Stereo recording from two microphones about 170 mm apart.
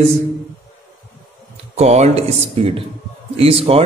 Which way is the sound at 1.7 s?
40° right (ahead or behind).